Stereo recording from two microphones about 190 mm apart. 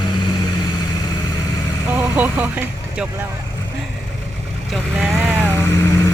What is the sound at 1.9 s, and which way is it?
Speech, 10° right (ahead or behind).